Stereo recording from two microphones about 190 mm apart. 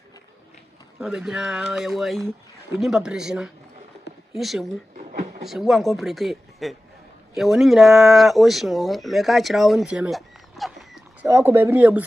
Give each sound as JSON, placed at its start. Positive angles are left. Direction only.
{"t": 0.9, "sound": "speech", "side_deg": -5}
{"t": 4.9, "sound": "a sound", "side_deg": -40}
{"t": 5.4, "sound": "speech", "side_deg": 0}
{"t": 11.2, "sound": "speech", "side_deg": -10}